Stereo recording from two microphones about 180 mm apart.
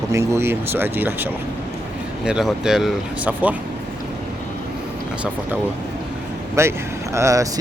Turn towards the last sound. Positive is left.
turn(degrees=-15)  # may be behind; listen again after turning